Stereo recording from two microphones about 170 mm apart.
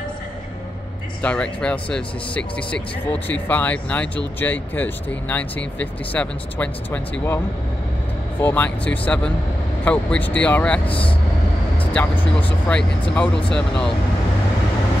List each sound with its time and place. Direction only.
1.2 s speech: 5° left (ahead or behind)
10.9 s speech: 30° left (ahead or behind)
11.9 s speech: 10° left (ahead or behind)